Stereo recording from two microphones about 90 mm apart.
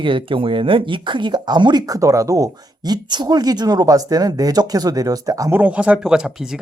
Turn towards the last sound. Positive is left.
turn(degrees=-5)  # may be behind; listen again after turning